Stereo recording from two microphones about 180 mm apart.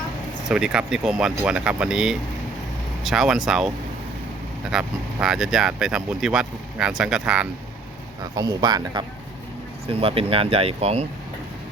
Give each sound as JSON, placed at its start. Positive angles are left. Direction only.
{"t": 0.4, "sound": "speech", "side_deg": -5}
{"t": 4.7, "sound": "speech", "side_deg": -5}
{"t": 8.4, "sound": "speech", "side_deg": -25}